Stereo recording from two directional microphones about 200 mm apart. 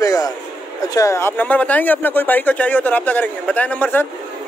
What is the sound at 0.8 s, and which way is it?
Speech, 15° left (ahead or behind).